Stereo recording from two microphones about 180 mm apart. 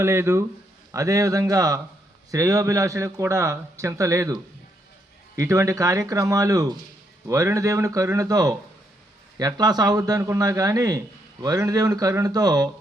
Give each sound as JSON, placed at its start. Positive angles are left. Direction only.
{"t": 0.0, "sound": "a man's voice", "side_deg": -15}
{"t": 5.4, "sound": "a man's voice", "side_deg": -15}